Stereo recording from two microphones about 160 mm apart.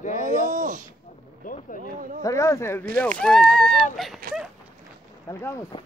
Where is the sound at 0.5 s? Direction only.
55° right (ahead or behind).